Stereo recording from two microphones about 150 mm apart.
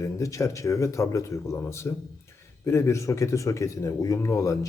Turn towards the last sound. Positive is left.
turn(degrees=20)  # may be behind; listen again after turning